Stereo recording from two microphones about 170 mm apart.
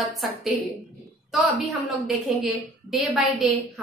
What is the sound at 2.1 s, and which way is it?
A woman's voice, centre (ahead or behind).